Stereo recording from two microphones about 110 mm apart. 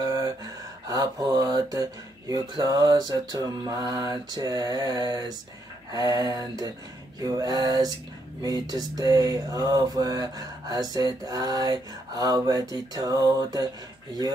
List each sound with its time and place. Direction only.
0.0 s gasp: 30° right (ahead or behind)
0.8 s mantra: 35° right (ahead or behind)